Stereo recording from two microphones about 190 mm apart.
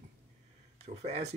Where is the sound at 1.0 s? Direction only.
35° right (ahead or behind).